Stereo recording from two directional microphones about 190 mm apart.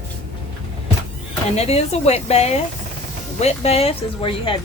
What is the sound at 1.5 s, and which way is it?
Speech, 35° left (ahead or behind).